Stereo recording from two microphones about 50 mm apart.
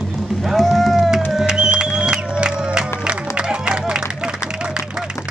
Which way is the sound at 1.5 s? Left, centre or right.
Centre.